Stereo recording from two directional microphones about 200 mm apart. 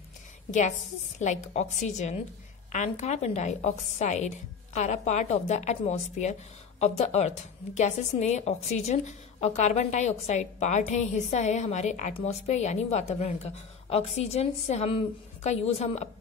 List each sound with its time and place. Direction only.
0.5 s a woman's voice: 35° left (ahead or behind)